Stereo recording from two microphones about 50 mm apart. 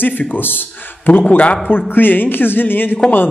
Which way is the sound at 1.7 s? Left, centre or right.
Left.